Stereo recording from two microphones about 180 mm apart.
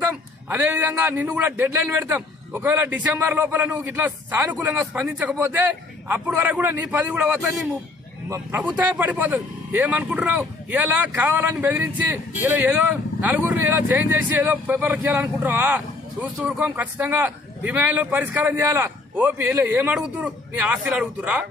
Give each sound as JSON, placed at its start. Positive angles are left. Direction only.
{"t": 0.0, "sound": "speech", "side_deg": -10}
{"t": 13.2, "sound": "speech", "side_deg": -10}